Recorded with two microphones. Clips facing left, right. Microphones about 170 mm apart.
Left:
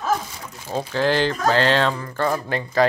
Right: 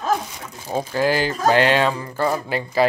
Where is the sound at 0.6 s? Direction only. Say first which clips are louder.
Right 1 dB; 10° right (ahead or behind).